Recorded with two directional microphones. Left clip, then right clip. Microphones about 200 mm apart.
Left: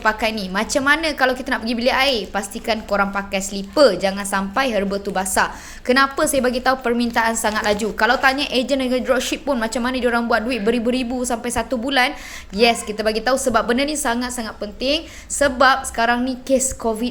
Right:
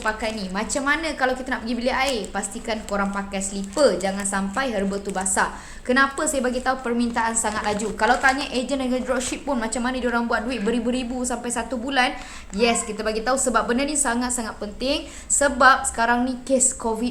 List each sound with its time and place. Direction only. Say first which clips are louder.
0.0 s a woman's voice: left 6 dB; 35° left (ahead or behind); by 17.1 s 15° left (ahead or behind)